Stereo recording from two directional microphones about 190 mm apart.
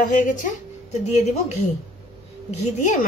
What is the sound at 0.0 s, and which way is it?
Speech, 45° left (ahead or behind).